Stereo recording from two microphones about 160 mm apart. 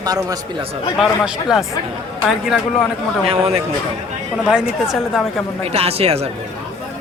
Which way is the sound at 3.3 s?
40° right (ahead or behind).